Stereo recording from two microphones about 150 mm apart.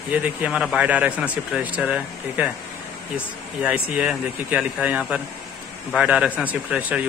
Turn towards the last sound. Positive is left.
turn(degrees=-10)  # may be behind; listen again after turning